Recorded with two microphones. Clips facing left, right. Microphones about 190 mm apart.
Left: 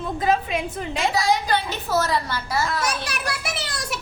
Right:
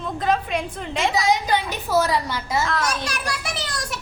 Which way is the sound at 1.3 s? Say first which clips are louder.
Right 1 dB; 15° right (ahead or behind).